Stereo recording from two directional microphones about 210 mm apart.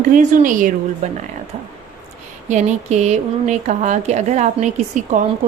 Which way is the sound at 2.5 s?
35° right (ahead or behind).